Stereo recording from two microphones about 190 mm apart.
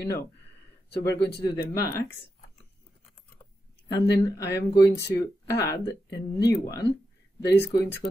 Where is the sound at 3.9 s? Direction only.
60° left (ahead or behind).